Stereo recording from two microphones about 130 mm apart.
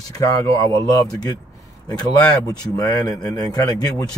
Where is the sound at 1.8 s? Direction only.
10° left (ahead or behind).